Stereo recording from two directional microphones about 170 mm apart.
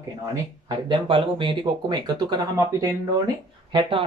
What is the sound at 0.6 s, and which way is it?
Speech, 30° right (ahead or behind).